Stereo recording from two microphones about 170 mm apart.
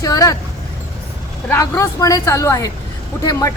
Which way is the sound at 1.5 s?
20° left (ahead or behind).